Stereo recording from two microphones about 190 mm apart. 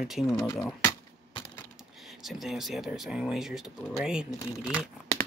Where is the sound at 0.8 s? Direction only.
15° left (ahead or behind).